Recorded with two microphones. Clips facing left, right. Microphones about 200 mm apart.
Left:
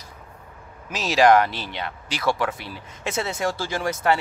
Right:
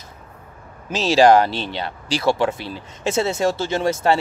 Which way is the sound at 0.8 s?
30° right (ahead or behind).